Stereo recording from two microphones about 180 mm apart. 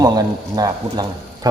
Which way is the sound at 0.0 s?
20° right (ahead or behind).